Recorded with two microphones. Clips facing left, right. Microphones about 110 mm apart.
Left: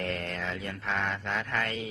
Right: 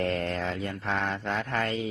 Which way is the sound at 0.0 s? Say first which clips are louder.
Right 5 dB; 40° right (ahead or behind).